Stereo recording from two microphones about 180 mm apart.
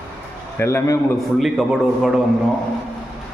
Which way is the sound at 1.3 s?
Centre (ahead or behind).